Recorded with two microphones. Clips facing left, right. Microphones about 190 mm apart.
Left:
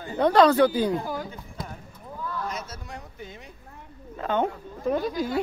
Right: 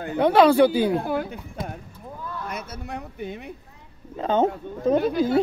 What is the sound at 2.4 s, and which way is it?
Speech, 60° right (ahead or behind).